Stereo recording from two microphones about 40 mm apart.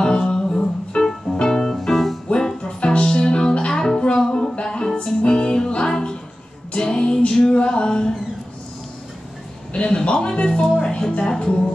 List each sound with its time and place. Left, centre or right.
0.0 s music: centre
1.8 s music: centre
2.2 s music: left
9.7 s a sound: left